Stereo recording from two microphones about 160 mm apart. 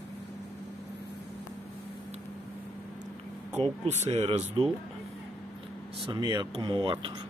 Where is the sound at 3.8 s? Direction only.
40° right (ahead or behind).